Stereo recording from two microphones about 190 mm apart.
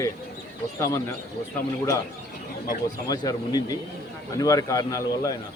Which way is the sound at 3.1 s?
20° left (ahead or behind).